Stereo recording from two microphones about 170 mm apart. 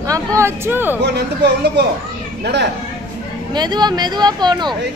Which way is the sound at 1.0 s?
80° right.